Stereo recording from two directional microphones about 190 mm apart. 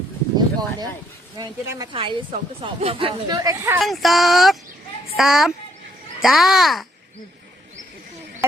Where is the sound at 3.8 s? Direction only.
Centre (ahead or behind).